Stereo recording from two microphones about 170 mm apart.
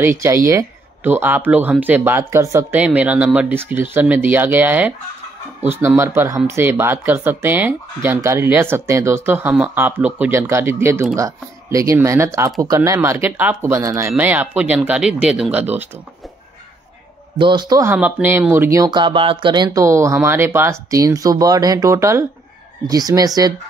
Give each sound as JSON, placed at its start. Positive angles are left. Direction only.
{"t": 0.0, "sound": "speech", "side_deg": -15}
{"t": 17.4, "sound": "speech", "side_deg": -25}
{"t": 17.9, "sound": "speech", "side_deg": -10}